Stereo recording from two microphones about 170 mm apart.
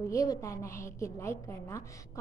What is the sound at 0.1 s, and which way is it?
A woman's voice, 20° left (ahead or behind).